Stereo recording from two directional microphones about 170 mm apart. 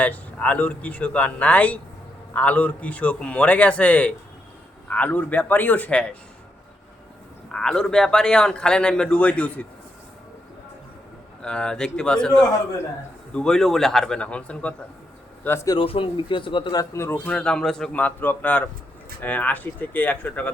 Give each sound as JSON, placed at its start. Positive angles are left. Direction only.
{"t": 0.0, "sound": "a man's voice", "side_deg": 10}
{"t": 7.5, "sound": "speech", "side_deg": 5}
{"t": 11.4, "sound": "speech", "side_deg": 5}
{"t": 15.4, "sound": "a man's voice", "side_deg": 15}
{"t": 15.8, "sound": "a man's voice", "side_deg": 30}